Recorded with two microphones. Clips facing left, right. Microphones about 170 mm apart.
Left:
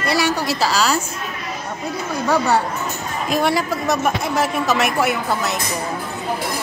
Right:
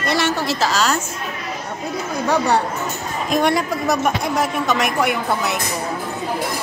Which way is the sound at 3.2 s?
5° left (ahead or behind).